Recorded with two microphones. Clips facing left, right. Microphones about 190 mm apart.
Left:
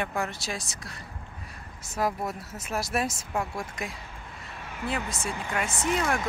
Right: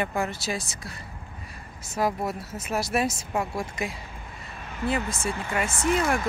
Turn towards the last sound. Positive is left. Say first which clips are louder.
# right 3 dB
turn(degrees=0)  # may be behind; listen again after turning